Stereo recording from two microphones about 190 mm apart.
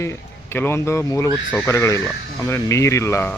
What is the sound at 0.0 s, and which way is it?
Speech, 15° left (ahead or behind).